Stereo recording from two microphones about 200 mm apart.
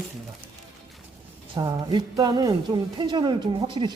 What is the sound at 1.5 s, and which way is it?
A woman's voice, 20° right (ahead or behind).